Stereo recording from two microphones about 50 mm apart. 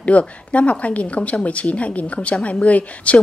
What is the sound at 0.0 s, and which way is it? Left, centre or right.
Speech, left.